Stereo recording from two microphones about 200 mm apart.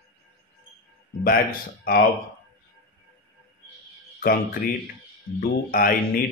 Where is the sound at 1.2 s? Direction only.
45° left (ahead or behind).